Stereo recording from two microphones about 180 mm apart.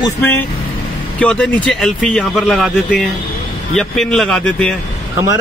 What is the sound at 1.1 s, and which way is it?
Speech, 5° left (ahead or behind).